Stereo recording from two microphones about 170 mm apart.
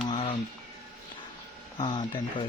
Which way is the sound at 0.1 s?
30° left (ahead or behind).